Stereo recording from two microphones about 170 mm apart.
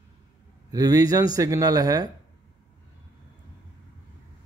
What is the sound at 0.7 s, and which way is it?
A man's voice, 20° right (ahead or behind).